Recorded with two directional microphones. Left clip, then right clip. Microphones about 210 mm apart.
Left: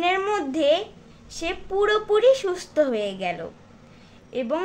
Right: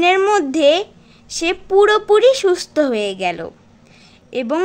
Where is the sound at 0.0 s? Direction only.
45° right (ahead or behind).